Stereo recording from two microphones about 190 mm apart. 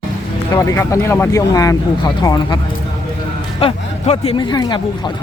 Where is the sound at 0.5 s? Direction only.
15° left (ahead or behind).